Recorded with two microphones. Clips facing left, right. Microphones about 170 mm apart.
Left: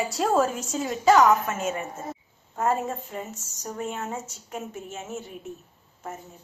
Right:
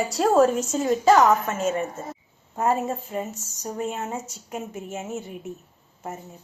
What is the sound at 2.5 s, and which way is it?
A woman's voice, 10° right (ahead or behind).